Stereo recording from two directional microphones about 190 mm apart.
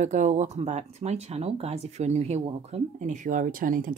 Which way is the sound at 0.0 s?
40° right (ahead or behind).